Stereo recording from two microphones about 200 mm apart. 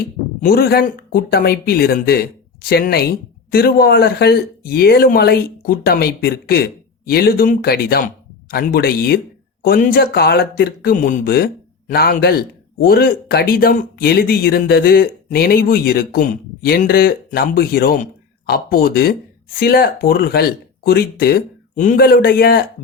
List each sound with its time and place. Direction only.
0.4 s speech: 50° left (ahead or behind)